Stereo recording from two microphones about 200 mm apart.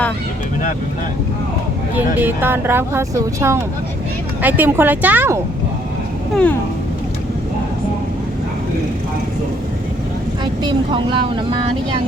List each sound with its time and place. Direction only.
2.1 s speech: 10° right (ahead or behind)
6.3 s speech: 5° left (ahead or behind)
10.4 s speech: 20° right (ahead or behind)